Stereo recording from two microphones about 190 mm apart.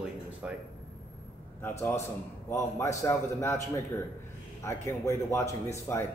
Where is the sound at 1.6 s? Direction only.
10° left (ahead or behind).